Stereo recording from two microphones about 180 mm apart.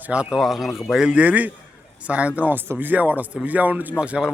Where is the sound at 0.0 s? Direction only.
5° right (ahead or behind).